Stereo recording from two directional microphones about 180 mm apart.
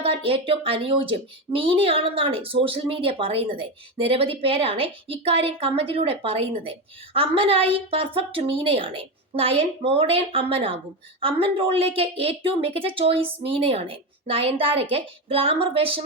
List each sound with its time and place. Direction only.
0.0 s speech: 30° right (ahead or behind)